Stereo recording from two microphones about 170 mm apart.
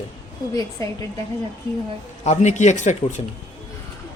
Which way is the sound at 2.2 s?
40° left (ahead or behind).